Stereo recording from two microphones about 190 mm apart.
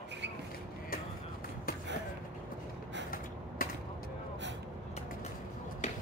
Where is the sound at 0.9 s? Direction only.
50° left (ahead or behind).